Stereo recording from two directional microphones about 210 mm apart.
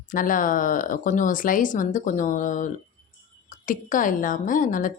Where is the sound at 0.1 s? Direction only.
40° left (ahead or behind).